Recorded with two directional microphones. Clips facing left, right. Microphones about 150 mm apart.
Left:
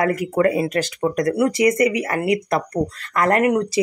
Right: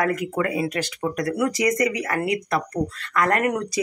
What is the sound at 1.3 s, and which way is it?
Speech, 30° left (ahead or behind).